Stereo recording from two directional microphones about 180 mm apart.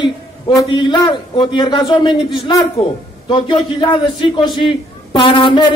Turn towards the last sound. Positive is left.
turn(degrees=25)  # may be behind; listen again after turning